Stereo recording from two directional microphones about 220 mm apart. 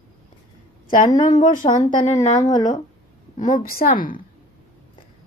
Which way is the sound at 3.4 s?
35° left (ahead or behind).